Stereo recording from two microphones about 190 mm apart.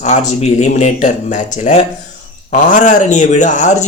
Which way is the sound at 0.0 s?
40° left (ahead or behind).